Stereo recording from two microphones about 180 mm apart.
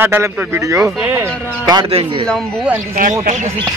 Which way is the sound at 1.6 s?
25° right (ahead or behind).